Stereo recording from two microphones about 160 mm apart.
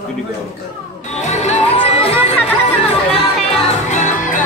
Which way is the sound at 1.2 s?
45° left (ahead or behind).